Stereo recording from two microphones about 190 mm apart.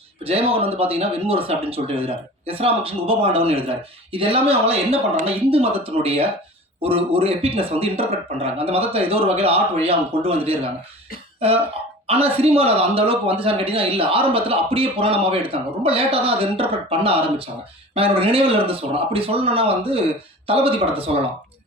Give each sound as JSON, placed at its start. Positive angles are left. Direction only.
{"t": 0.3, "sound": "speech", "side_deg": -30}
{"t": 11.3, "sound": "cough", "side_deg": -30}
{"t": 12.0, "sound": "a man's voice", "side_deg": -30}